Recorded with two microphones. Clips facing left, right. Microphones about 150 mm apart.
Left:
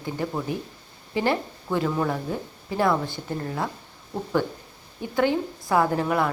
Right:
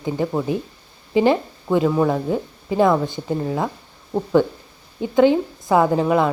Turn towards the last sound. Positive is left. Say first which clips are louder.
# right 6 dB
turn(degrees=-20)  # may be behind; listen again after turning